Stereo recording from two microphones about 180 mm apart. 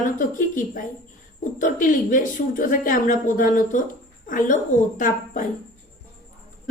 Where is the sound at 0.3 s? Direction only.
45° left (ahead or behind).